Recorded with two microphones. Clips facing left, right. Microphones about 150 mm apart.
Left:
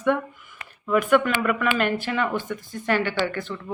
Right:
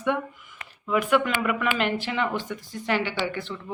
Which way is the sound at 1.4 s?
10° right (ahead or behind).